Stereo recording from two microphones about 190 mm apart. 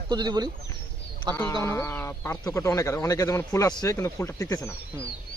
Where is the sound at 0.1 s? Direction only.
20° right (ahead or behind).